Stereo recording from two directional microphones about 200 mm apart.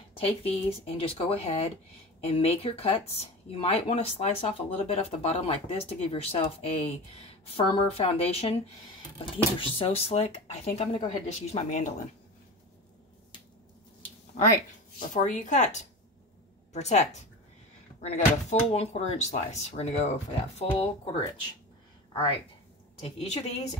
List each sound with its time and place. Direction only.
0.1 s speech: 30° left (ahead or behind)
15.0 s speech: 40° left (ahead or behind)
22.9 s speech: 30° left (ahead or behind)